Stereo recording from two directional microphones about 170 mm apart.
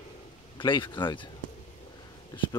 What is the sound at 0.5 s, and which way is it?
Speech, 30° left (ahead or behind).